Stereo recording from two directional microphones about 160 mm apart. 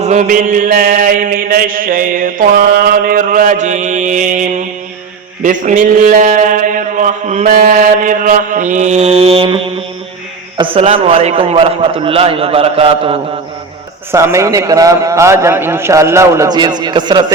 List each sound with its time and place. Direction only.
0.0 s mantra: 50° right (ahead or behind)
5.4 s a man's voice: 55° right (ahead or behind); by 13.1 s 35° right (ahead or behind)
14.1 s a man's voice: 15° right (ahead or behind)